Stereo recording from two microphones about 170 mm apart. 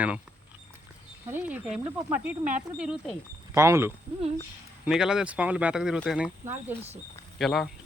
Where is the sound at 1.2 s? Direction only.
10° right (ahead or behind).